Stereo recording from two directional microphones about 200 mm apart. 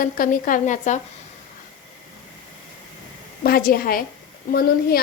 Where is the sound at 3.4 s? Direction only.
50° left (ahead or behind).